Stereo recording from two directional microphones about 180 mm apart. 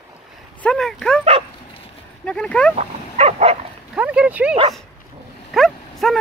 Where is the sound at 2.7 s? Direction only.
35° right (ahead or behind).